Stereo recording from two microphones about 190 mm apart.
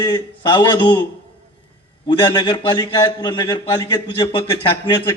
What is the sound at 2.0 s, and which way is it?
A man's voice, 25° left (ahead or behind).